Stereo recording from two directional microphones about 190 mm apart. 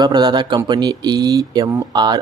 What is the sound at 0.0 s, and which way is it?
Speech, 20° right (ahead or behind).